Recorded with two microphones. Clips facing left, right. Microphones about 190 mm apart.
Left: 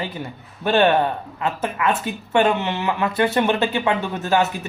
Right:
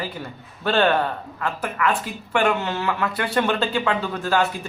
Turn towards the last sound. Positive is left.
turn(degrees=20)  # may be behind; listen again after turning